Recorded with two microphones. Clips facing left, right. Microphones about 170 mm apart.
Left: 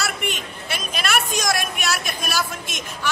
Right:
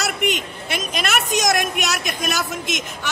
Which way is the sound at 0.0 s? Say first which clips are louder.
Right 5 dB; 20° right (ahead or behind).